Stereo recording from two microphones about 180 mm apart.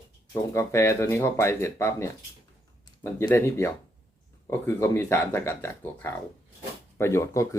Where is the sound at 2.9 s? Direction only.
20° left (ahead or behind).